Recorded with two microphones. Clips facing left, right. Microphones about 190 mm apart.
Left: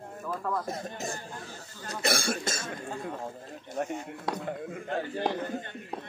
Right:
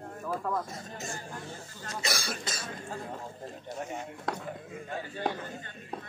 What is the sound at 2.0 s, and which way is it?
Speech, 55° left (ahead or behind).